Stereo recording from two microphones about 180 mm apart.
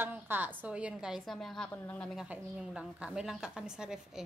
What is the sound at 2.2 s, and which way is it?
A woman's voice, 5° right (ahead or behind).